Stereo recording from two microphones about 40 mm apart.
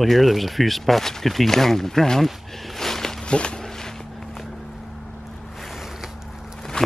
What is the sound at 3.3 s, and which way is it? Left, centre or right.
Speech, left.